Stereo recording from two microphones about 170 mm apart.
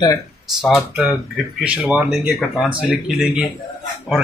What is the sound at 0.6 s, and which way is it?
Speech, centre (ahead or behind).